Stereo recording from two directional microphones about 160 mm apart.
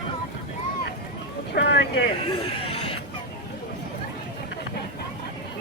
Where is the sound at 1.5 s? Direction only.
90° left.